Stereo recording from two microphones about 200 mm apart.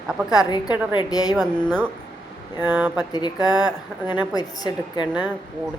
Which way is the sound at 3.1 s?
20° left (ahead or behind).